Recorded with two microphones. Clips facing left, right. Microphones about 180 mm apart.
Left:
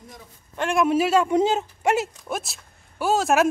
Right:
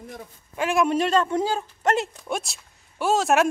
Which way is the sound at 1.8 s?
10° left (ahead or behind).